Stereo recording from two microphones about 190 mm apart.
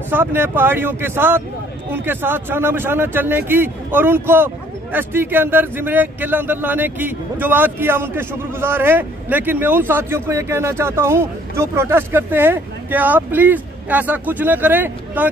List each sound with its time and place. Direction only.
0.1 s a man's voice: 10° right (ahead or behind)